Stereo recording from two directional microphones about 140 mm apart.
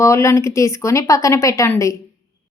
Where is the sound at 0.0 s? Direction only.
20° left (ahead or behind).